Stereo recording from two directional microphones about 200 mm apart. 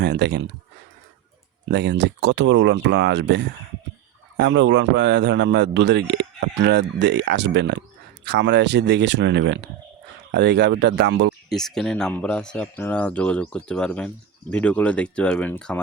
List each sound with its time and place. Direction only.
0.0 s speech: 60° right (ahead or behind)
1.6 s speech: 55° right (ahead or behind)
11.4 s speech: centre (ahead or behind)